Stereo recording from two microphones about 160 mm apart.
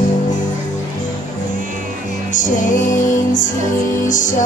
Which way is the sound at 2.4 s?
55° left (ahead or behind).